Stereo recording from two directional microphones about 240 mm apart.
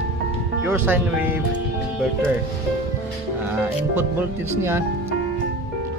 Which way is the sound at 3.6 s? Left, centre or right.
Centre.